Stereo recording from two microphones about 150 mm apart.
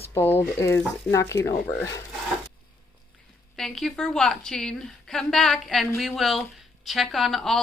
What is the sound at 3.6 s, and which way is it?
Speech, centre (ahead or behind).